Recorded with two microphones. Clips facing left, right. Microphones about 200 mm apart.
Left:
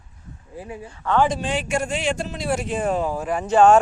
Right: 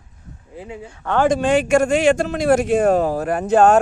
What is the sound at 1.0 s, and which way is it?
Speech, 55° right (ahead or behind).